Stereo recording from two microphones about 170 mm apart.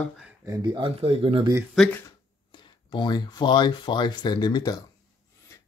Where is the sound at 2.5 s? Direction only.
25° left (ahead or behind).